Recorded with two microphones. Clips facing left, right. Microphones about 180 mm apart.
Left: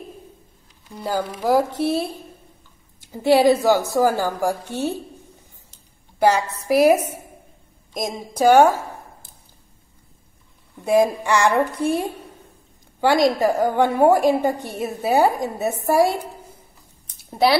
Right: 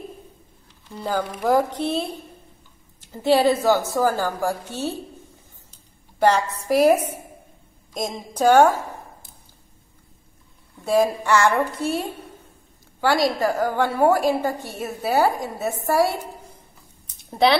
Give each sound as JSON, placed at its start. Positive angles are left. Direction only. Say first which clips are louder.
{"t": 0.8, "sound": "a woman's voice", "louder": "left 1 dB", "side_deg": 10}
{"t": 6.1, "sound": "a woman's voice", "louder": "left 1 dB", "side_deg": 10}
{"t": 10.8, "sound": "a woman's voice", "louder": "left 2 dB", "side_deg": 15}
{"t": 17.2, "sound": "speech", "louder": "even", "side_deg": 5}